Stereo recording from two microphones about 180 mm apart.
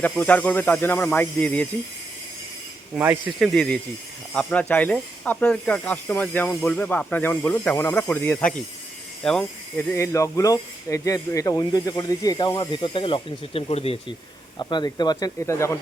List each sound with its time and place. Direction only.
0.0 s speech: 10° left (ahead or behind)
2.9 s speech: 5° right (ahead or behind); by 15.8 s 15° left (ahead or behind)